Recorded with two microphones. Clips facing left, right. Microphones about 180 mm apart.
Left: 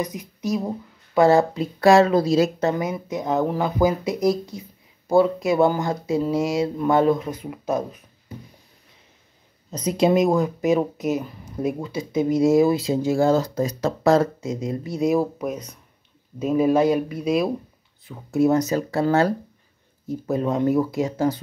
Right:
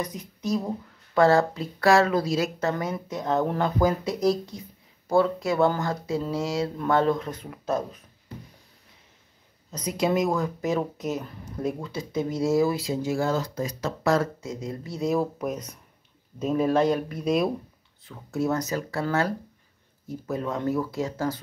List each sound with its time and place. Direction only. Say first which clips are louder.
0.0 s speech: left 4 dB; 10° left (ahead or behind)
2.7 s speech: left 4 dB; 10° left (ahead or behind)
9.7 s speech: left 6 dB; 25° left (ahead or behind); by 17.5 s centre (ahead or behind)
18.0 s speech: left 7 dB; 15° left (ahead or behind)